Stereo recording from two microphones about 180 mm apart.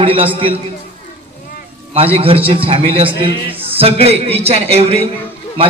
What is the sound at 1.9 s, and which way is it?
A man's voice, 30° right (ahead or behind).